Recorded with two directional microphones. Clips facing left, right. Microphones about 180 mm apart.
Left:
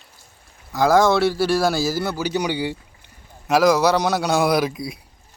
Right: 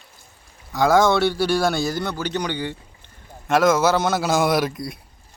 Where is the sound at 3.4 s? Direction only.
Centre (ahead or behind).